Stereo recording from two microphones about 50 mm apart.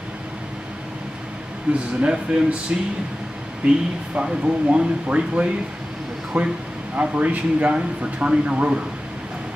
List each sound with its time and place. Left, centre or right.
1.7 s speech: right